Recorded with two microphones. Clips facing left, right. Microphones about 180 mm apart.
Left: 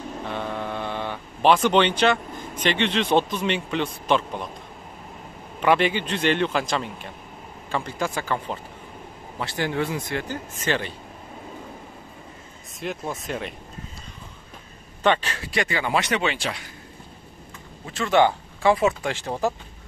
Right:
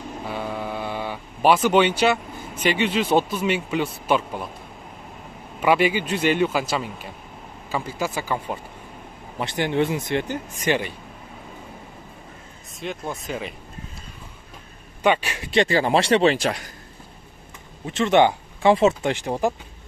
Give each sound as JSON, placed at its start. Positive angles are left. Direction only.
{"t": 0.2, "sound": "speech", "side_deg": -5}
{"t": 5.6, "sound": "a man's voice", "side_deg": -5}
{"t": 9.4, "sound": "speech", "side_deg": -20}
{"t": 12.8, "sound": "speech", "side_deg": 0}
{"t": 15.0, "sound": "a man's voice", "side_deg": -10}
{"t": 15.5, "sound": "speech", "side_deg": -30}
{"t": 17.8, "sound": "speech", "side_deg": -20}